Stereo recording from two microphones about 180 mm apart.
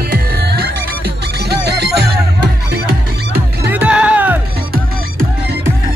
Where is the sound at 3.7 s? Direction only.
10° right (ahead or behind).